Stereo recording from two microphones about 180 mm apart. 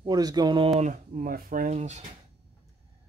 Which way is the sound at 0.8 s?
45° right (ahead or behind).